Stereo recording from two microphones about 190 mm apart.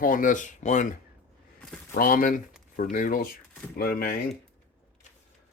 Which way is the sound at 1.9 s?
50° left (ahead or behind).